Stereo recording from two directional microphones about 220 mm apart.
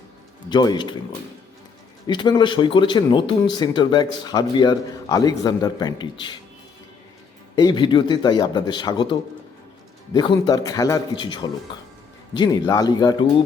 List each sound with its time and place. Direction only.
0.5 s speech: 20° left (ahead or behind)
2.0 s speech: 20° left (ahead or behind)
7.5 s speech: 20° left (ahead or behind)
10.2 s speech: 20° left (ahead or behind)